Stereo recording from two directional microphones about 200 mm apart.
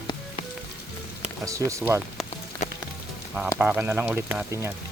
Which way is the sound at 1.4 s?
15° right (ahead or behind).